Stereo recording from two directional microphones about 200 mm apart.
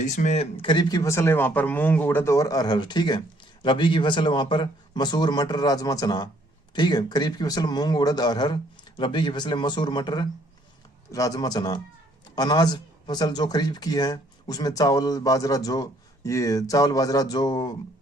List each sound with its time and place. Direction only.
0.0 s speech: 35° left (ahead or behind); by 17.7 s 20° left (ahead or behind)